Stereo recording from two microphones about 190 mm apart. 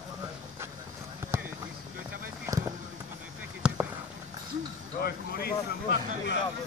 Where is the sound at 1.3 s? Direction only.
15° right (ahead or behind).